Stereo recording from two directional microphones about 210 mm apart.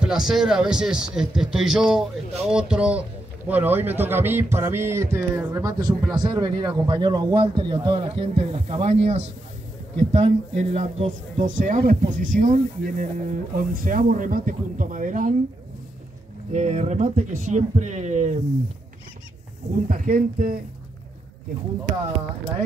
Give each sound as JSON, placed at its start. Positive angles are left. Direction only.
{"t": 0.0, "sound": "a man's voice", "side_deg": 0}
{"t": 16.5, "sound": "speech", "side_deg": -30}
{"t": 19.9, "sound": "speech", "side_deg": -40}